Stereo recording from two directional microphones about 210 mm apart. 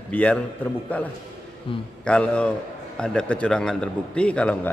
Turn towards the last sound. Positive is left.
turn(degrees=5)  # may be behind; listen again after turning